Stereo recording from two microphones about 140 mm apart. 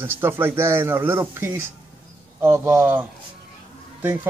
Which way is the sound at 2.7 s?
15° right (ahead or behind).